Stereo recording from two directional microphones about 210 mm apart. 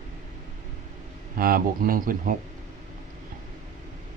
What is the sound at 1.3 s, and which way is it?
Speech, 45° right (ahead or behind).